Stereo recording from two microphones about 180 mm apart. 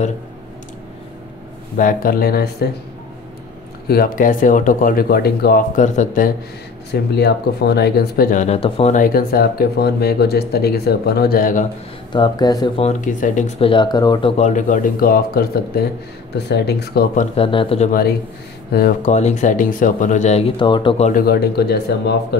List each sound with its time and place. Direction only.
1.8 s speech: 50° left (ahead or behind)
3.8 s speech: 55° left (ahead or behind)
6.9 s speech: 65° left (ahead or behind); by 8.9 s 30° left (ahead or behind)
8.9 s speech: 50° left (ahead or behind)
12.1 s speech: 25° left (ahead or behind)
12.8 s speech: 45° left (ahead or behind); by 14.3 s 20° left (ahead or behind)
14.3 s speech: 40° left (ahead or behind)
17.5 s speech: 30° left (ahead or behind)
18.7 s speech: 55° left (ahead or behind); by 20.9 s 25° left (ahead or behind)
21.0 s speech: 55° left (ahead or behind)